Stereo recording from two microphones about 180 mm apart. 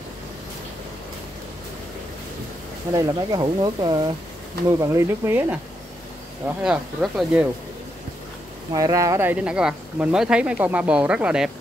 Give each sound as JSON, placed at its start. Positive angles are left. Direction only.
{"t": 2.9, "sound": "speech", "side_deg": -20}
{"t": 8.7, "sound": "speech", "side_deg": -20}